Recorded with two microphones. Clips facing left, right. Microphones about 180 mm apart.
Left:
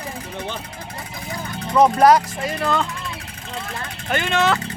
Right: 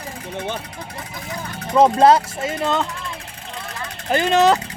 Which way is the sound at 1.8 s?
25° right (ahead or behind).